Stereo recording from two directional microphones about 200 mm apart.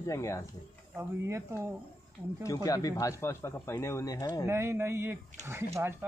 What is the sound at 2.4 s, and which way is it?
Speech, 15° left (ahead or behind).